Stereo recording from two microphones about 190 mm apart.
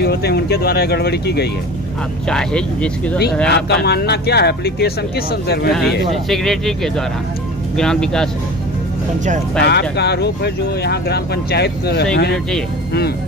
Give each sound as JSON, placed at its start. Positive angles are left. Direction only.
{"t": 0.0, "sound": "speech", "side_deg": 55}
{"t": 2.2, "sound": "speech", "side_deg": 5}
{"t": 3.4, "sound": "speech", "side_deg": 65}
{"t": 5.7, "sound": "speech", "side_deg": 0}
{"t": 9.6, "sound": "speech", "side_deg": 60}